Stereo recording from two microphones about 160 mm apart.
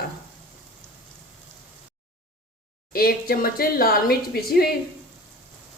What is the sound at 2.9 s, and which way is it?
A woman's voice, 70° left (ahead or behind).